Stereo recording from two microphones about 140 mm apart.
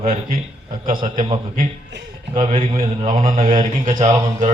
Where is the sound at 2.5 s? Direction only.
45° right (ahead or behind).